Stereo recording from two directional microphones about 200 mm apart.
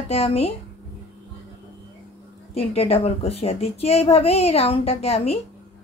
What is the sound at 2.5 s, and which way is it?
A woman's voice, 30° left (ahead or behind).